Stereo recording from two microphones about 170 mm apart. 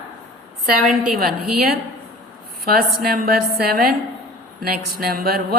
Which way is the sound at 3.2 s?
65° right (ahead or behind).